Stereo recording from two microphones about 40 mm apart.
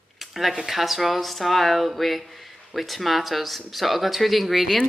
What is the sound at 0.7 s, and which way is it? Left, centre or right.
Speech, centre.